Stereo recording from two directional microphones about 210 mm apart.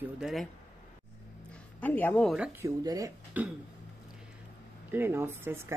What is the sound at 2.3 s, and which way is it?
Speech, 5° right (ahead or behind).